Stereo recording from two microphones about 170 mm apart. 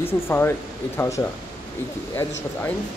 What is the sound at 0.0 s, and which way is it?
Speech, 15° left (ahead or behind).